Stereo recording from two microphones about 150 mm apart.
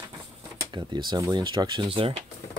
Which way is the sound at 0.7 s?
30° right (ahead or behind).